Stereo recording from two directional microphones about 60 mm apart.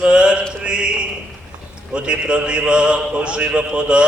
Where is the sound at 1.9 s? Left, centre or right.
Centre.